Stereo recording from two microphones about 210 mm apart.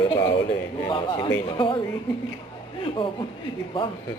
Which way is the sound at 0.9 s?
20° left (ahead or behind).